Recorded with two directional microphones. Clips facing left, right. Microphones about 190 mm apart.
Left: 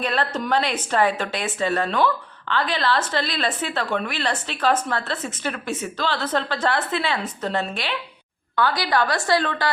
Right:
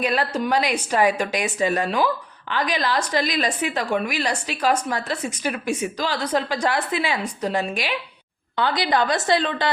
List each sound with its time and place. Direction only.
0.0 s a woman's voice: 10° right (ahead or behind)